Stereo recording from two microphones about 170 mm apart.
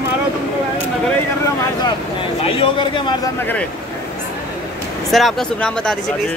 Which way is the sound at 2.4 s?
30° left (ahead or behind).